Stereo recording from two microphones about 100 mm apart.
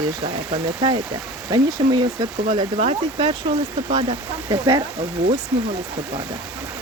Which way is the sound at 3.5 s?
45° right (ahead or behind).